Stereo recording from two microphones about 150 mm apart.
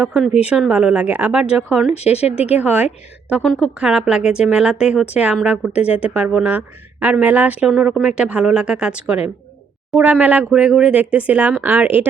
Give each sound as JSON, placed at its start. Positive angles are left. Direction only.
{"t": 0.0, "sound": "speech", "side_deg": -5}
{"t": 1.9, "sound": "speech", "side_deg": 45}
{"t": 2.6, "sound": "speech", "side_deg": -10}